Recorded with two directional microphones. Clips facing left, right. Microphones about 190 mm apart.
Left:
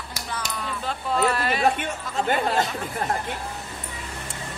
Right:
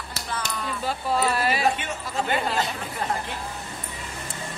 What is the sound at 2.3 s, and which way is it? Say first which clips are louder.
Speech: left 3 dB; 50° left (ahead or behind).